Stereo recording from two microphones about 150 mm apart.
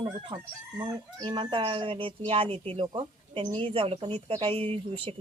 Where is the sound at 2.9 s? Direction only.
35° right (ahead or behind).